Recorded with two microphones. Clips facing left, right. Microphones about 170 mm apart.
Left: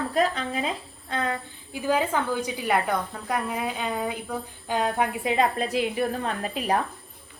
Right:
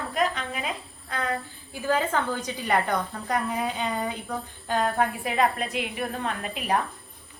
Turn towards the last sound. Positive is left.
turn(degrees=35)  # may be behind; listen again after turning